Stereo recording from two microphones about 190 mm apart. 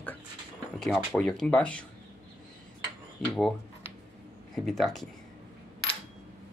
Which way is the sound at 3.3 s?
Centre (ahead or behind).